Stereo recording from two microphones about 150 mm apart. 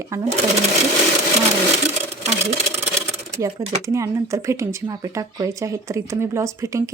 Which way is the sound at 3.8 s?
20° right (ahead or behind).